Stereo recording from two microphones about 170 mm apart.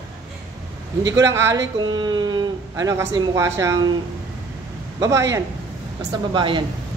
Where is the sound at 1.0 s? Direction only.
20° right (ahead or behind).